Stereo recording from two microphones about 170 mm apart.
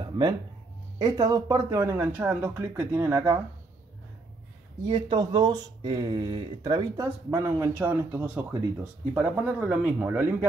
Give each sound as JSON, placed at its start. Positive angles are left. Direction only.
{"t": 0.0, "sound": "a sound", "side_deg": -25}
{"t": 0.9, "sound": "speech", "side_deg": -25}
{"t": 4.8, "sound": "speech", "side_deg": -25}